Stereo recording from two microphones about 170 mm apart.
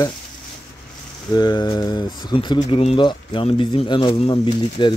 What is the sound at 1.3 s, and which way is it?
Speech, 25° left (ahead or behind).